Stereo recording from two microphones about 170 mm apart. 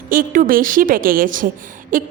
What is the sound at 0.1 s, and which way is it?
A woman's voice, 55° right (ahead or behind).